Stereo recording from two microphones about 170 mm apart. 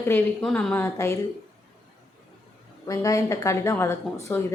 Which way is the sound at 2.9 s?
20° left (ahead or behind).